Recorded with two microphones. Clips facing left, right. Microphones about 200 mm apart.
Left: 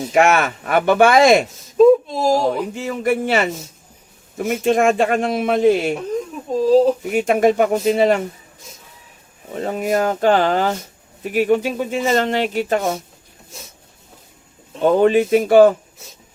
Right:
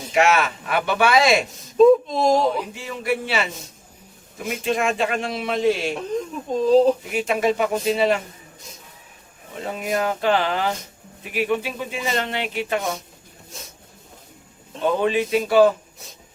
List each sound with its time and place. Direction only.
0.1 s speech: 50° left (ahead or behind)
1.8 s a sound: 5° left (ahead or behind)
2.5 s speech: 45° left (ahead or behind)
6.7 s speech: 5° left (ahead or behind)
7.1 s speech: 50° left (ahead or behind)
9.6 s speech: 45° left (ahead or behind)
14.8 s speech: 45° left (ahead or behind)